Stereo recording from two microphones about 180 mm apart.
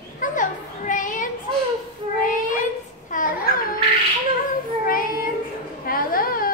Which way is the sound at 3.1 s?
50° left (ahead or behind).